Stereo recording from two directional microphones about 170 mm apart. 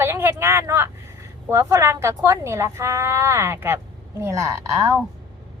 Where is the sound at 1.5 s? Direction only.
15° right (ahead or behind).